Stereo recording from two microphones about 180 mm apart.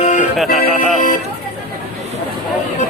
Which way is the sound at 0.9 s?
50° left (ahead or behind).